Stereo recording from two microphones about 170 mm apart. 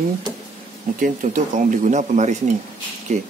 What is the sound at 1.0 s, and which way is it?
Speech, 50° right (ahead or behind).